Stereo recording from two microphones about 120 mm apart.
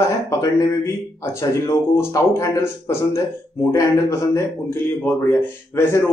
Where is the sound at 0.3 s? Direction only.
25° left (ahead or behind).